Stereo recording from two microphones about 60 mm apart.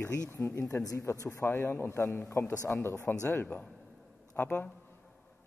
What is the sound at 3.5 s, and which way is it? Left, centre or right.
Speech, left.